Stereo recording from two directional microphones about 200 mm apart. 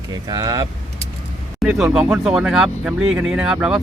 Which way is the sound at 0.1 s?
20° right (ahead or behind).